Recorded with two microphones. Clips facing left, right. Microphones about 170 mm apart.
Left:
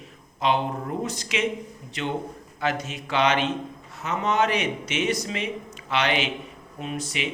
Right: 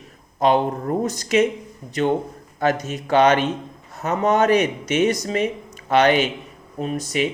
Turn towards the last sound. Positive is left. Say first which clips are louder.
# right 7 dB
turn(degrees=-40)  # may be behind; listen again after turning